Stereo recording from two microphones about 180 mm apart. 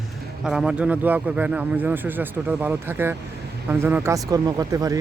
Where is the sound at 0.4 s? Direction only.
Centre (ahead or behind).